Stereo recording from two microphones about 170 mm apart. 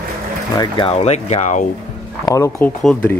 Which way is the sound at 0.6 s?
30° left (ahead or behind).